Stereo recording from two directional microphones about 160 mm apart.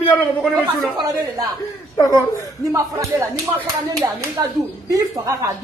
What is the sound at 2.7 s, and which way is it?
A man's voice, 15° right (ahead or behind).